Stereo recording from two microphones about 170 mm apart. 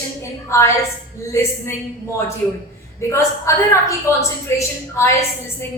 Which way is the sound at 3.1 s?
15° left (ahead or behind).